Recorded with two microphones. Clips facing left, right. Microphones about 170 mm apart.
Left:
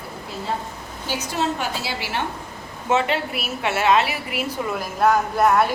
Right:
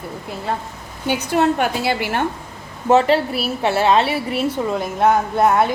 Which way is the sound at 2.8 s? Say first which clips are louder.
Right 7 dB; 35° right (ahead or behind).